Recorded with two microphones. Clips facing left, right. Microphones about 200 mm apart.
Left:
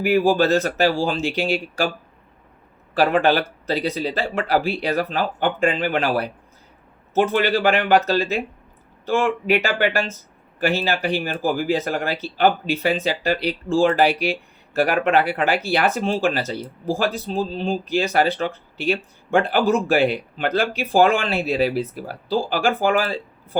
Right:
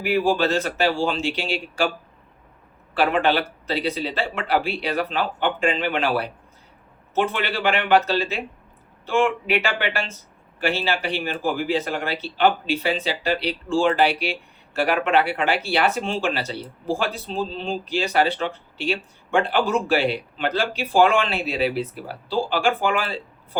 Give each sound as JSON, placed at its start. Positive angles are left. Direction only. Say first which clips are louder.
{"t": 0.0, "sound": "speech", "louder": "left 3 dB", "side_deg": 45}
{"t": 2.9, "sound": "speech", "louder": "left 3 dB", "side_deg": 40}